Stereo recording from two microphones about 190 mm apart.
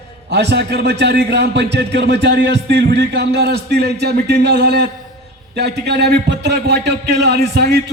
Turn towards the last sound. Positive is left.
turn(degrees=-60)  # may be behind; listen again after turning